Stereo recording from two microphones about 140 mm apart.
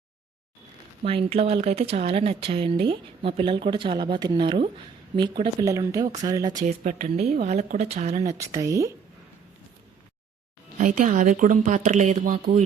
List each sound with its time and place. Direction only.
1.0 s speech: 45° right (ahead or behind); by 6.6 s 30° right (ahead or behind)
6.6 s speech: 60° right (ahead or behind)
8.2 s speech: 25° right (ahead or behind)
10.8 s a woman's voice: 65° right (ahead or behind)
12.2 s a woman's voice: 75° right (ahead or behind)